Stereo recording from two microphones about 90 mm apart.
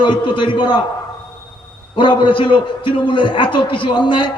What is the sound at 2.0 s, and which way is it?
A man's voice, 65° left (ahead or behind).